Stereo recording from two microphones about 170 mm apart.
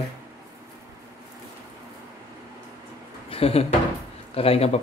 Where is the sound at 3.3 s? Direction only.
35° left (ahead or behind).